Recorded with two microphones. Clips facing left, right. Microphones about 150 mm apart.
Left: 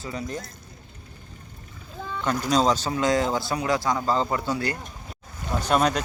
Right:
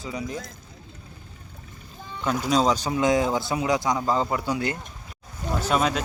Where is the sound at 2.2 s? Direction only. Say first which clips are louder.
Even; 5° right (ahead or behind).